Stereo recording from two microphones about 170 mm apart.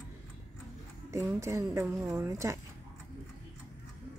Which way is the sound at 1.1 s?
15° right (ahead or behind).